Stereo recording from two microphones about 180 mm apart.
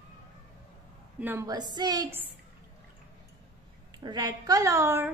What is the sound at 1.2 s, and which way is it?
Speech, 10° right (ahead or behind).